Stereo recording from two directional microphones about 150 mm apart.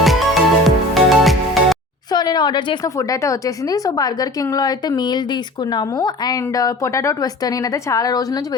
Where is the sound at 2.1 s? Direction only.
30° left (ahead or behind).